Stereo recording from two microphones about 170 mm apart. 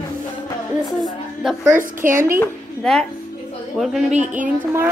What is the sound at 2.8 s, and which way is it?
Speech, 5° left (ahead or behind).